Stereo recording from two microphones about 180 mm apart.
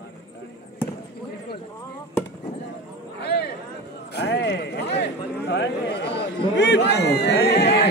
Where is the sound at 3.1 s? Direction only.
65° left (ahead or behind).